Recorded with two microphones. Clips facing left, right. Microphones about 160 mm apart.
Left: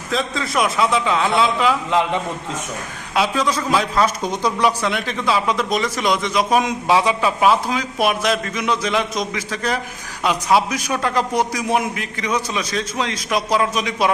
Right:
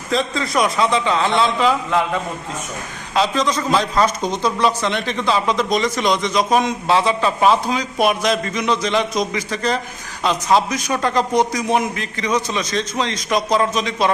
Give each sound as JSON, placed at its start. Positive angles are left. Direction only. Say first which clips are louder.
{"t": 0.1, "sound": "a man's voice", "louder": "right 2 dB", "side_deg": 0}
{"t": 1.9, "sound": "a man's voice", "louder": "left 1 dB", "side_deg": 20}
{"t": 3.2, "sound": "a man's voice", "louder": "right 1 dB", "side_deg": 5}